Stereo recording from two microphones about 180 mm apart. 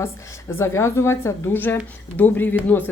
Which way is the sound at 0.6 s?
15° left (ahead or behind).